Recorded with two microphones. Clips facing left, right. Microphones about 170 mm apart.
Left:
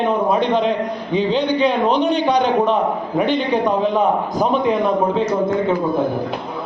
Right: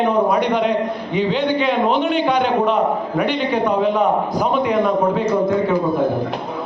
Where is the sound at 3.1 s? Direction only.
20° left (ahead or behind).